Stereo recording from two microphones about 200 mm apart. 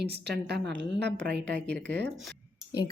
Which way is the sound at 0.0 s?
55° right (ahead or behind).